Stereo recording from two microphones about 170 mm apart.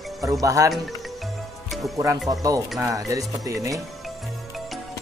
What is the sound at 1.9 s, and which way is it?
Speech, 20° right (ahead or behind).